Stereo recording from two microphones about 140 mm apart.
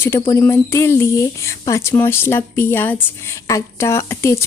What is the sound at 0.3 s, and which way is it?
A woman's voice, 20° left (ahead or behind).